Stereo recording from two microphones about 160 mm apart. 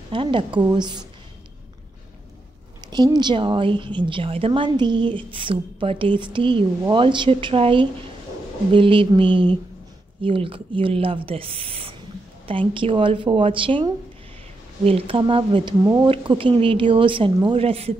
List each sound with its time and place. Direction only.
0.1 s a woman's voice: 30° right (ahead or behind)
2.9 s a woman's voice: 25° right (ahead or behind)